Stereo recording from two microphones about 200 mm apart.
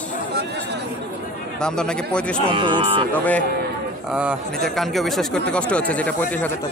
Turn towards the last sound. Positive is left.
turn(degrees=5)  # may be behind; listen again after turning